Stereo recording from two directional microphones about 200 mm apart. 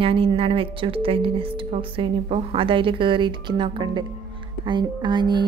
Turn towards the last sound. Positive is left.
turn(degrees=-20)  # may be behind; listen again after turning